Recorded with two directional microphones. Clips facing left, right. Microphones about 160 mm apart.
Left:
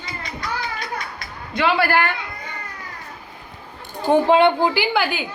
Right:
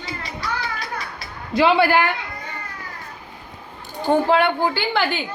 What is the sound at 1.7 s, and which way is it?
Speech, 15° right (ahead or behind).